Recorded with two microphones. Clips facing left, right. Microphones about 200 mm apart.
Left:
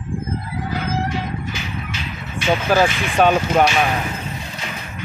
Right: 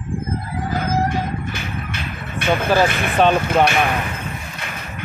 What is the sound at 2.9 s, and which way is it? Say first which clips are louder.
Speech: right 2 dB; 55° right (ahead or behind).